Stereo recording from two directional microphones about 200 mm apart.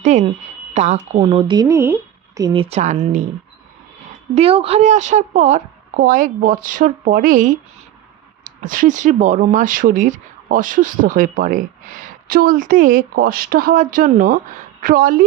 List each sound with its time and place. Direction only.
0.0 s a woman's voice: 35° right (ahead or behind)
4.4 s a woman's voice: 30° right (ahead or behind); by 15.2 s 45° right (ahead or behind)